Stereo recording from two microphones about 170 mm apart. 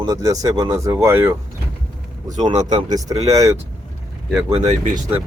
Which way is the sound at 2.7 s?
25° right (ahead or behind).